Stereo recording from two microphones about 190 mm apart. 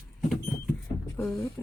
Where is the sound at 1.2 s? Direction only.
10° left (ahead or behind).